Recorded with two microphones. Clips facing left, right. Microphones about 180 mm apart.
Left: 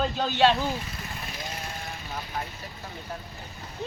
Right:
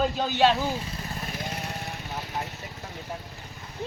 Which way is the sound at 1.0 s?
40° right (ahead or behind).